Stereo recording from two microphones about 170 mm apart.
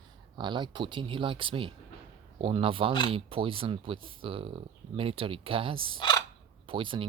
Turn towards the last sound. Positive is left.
turn(degrees=-30)  # may be behind; listen again after turning